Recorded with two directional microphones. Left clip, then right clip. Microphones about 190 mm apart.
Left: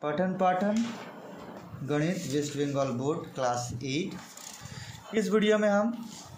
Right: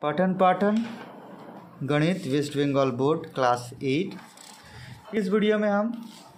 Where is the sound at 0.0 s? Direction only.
30° right (ahead or behind).